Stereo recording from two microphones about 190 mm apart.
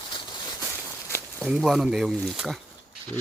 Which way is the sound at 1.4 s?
Centre (ahead or behind).